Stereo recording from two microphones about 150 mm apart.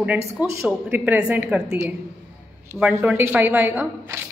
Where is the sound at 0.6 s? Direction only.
10° right (ahead or behind).